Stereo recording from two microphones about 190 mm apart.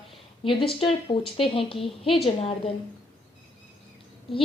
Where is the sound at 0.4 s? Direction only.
30° left (ahead or behind).